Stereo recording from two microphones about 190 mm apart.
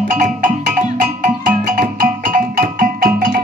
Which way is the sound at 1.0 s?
45° right (ahead or behind).